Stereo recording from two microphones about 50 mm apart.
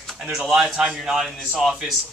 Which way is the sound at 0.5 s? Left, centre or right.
Centre.